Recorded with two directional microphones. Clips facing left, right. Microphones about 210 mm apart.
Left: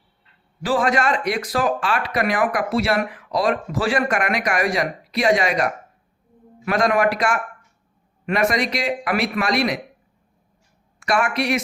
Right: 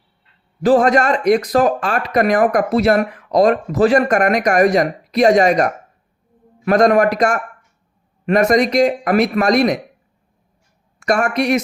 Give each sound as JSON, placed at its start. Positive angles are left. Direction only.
{"t": 0.6, "sound": "a man's voice", "side_deg": -40}
{"t": 11.0, "sound": "speech", "side_deg": -45}